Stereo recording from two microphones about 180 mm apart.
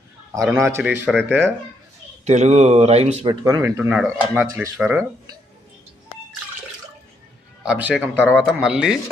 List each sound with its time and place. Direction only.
0.5 s speech: 15° right (ahead or behind)
2.2 s speech: 40° right (ahead or behind)
3.2 s speech: 20° right (ahead or behind)
7.6 s a man's voice: 5° right (ahead or behind)